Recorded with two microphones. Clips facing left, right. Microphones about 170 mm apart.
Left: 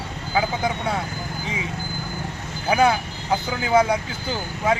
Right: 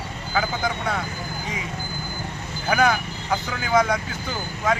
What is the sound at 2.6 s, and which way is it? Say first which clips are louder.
Speech: left 2 dB; 25° left (ahead or behind).